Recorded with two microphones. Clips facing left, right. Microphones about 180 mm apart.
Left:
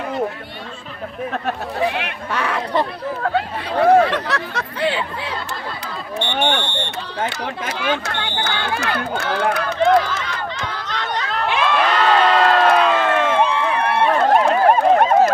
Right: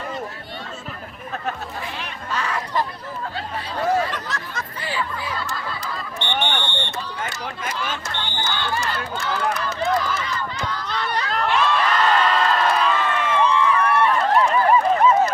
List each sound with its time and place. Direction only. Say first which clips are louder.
1.8 s speech: left 11 dB; 65° left (ahead or behind)
6.6 s speech: left 3 dB; 10° left (ahead or behind)
7.2 s speech: left 6 dB; 65° left (ahead or behind)
11.5 s crowd: left 3 dB; 60° left (ahead or behind)